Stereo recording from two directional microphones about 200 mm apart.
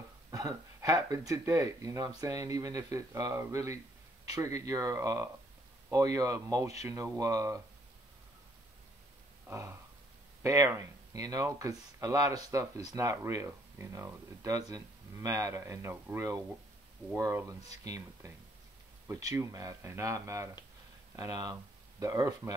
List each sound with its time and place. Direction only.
0.3 s speech: 15° right (ahead or behind)
9.5 s speech: 15° right (ahead or behind)